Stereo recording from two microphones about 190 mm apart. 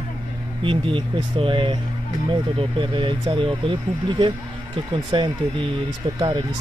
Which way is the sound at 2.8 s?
25° right (ahead or behind).